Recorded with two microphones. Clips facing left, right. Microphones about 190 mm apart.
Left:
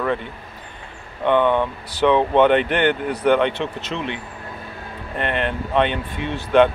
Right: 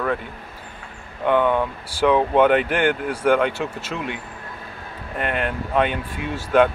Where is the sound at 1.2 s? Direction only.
5° right (ahead or behind).